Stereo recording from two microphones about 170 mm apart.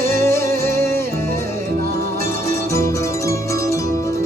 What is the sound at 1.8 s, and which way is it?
Music, 65° right (ahead or behind).